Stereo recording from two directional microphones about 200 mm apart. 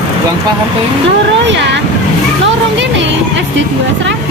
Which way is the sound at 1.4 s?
60° right (ahead or behind).